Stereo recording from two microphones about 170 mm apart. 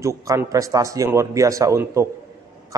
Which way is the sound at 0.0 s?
20° right (ahead or behind).